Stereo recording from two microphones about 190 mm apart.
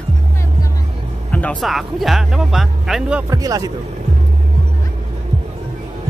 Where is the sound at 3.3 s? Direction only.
20° right (ahead or behind).